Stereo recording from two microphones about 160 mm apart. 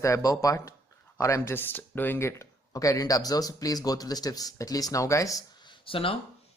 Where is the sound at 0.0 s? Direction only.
20° left (ahead or behind).